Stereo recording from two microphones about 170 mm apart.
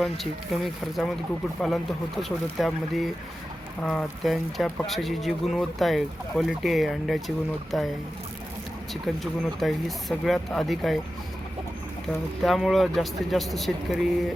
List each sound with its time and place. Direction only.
0.0 s speech: centre (ahead or behind)
8.9 s speech: centre (ahead or behind)
12.0 s speech: centre (ahead or behind)